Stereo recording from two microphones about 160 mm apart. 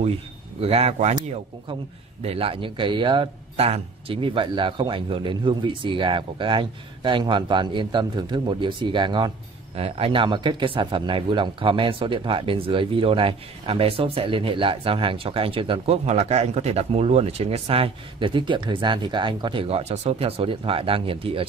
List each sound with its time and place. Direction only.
0.0 s speech: 40° right (ahead or behind)
2.2 s speech: 35° right (ahead or behind)